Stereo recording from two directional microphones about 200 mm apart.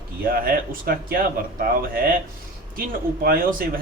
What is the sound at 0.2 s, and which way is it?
Speech, 45° right (ahead or behind).